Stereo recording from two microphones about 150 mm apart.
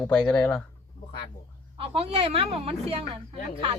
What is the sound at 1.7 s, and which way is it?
A woman's voice, 40° right (ahead or behind).